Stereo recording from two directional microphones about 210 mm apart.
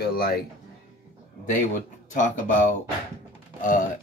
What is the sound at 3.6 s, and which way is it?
Speech, 40° left (ahead or behind).